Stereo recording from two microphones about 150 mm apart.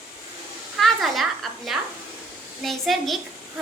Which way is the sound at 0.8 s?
Centre (ahead or behind).